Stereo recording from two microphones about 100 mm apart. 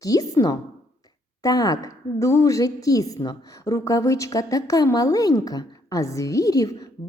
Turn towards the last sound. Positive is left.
turn(degrees=35)  # may be behind; listen again after turning